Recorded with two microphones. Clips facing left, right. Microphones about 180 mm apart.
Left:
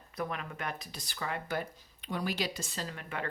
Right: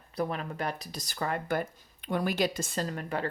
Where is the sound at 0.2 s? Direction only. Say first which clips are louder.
Right 5 dB; 35° right (ahead or behind).